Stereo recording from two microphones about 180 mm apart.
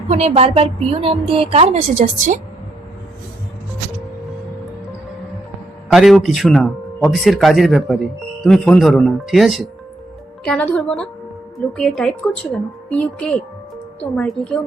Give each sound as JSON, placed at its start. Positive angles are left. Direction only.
{"t": 0.1, "sound": "a woman's voice", "side_deg": -35}
{"t": 5.9, "sound": "a woman's voice", "side_deg": 0}